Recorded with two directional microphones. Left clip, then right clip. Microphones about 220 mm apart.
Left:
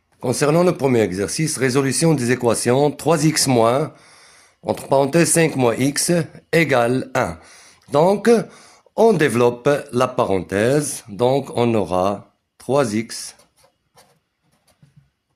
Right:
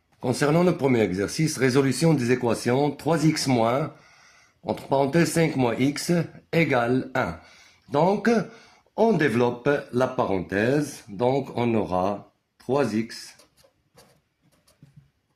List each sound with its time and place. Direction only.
0.2 s speech: 25° left (ahead or behind); by 13.2 s 45° left (ahead or behind)